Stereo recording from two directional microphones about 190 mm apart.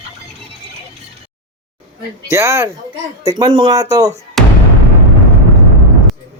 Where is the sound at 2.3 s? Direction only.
15° right (ahead or behind).